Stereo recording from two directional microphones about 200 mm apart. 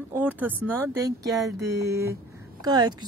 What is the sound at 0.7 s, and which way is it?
Speech, 10° right (ahead or behind).